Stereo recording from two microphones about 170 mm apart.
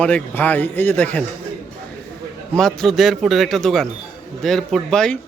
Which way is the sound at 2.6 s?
Centre (ahead or behind).